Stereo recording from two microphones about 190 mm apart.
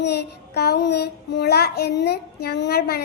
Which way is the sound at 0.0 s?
60° left (ahead or behind).